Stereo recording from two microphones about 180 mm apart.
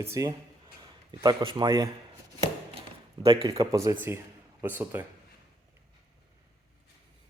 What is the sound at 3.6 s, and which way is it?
Speech, 20° right (ahead or behind).